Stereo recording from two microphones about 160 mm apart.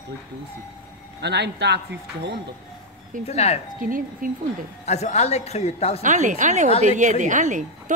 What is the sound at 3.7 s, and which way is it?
Speech, 60° right (ahead or behind).